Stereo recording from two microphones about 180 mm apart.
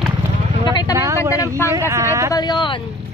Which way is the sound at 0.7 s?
25° left (ahead or behind).